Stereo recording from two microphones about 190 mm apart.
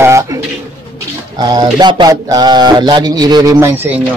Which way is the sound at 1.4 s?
20° right (ahead or behind).